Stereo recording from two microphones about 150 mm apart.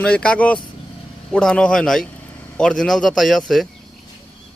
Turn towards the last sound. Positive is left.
turn(degrees=0)  # may be behind; listen again after turning